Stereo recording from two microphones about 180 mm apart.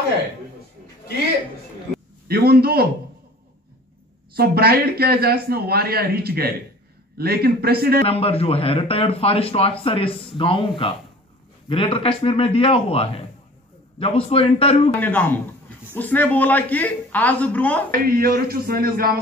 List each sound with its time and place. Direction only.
2.2 s speech: 60° right (ahead or behind)
4.3 s speech: 60° right (ahead or behind)
8.1 s speech: 35° left (ahead or behind)
15.0 s a man's voice: 10° left (ahead or behind)
17.9 s speech: 55° right (ahead or behind)